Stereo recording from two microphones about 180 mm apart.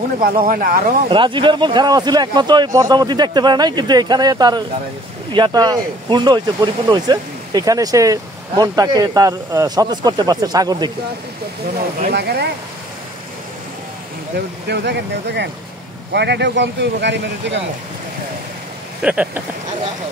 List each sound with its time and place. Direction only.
0.5 s speech: 50° right (ahead or behind)
1.0 s speech: 25° right (ahead or behind)
12.1 s speech: 65° right (ahead or behind)
14.3 s speech: 70° right (ahead or behind)
19.0 s speech: 5° right (ahead or behind)